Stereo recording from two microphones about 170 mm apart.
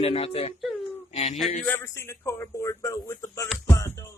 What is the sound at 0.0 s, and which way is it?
A man's voice, 35° left (ahead or behind).